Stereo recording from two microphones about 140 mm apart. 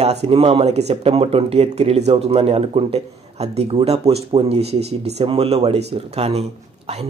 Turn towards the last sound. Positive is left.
turn(degrees=-45)  # may be behind; listen again after turning